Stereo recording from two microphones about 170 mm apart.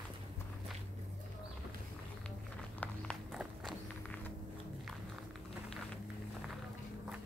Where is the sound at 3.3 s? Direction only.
5° right (ahead or behind).